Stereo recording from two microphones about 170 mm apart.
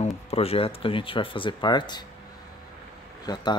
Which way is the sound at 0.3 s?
35° left (ahead or behind).